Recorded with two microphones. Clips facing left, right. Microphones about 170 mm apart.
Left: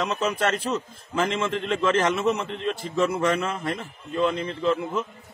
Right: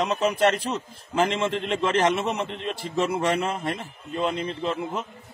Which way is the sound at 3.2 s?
25° right (ahead or behind).